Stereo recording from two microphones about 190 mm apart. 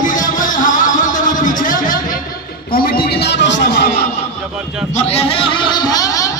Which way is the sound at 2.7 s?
50° left (ahead or behind).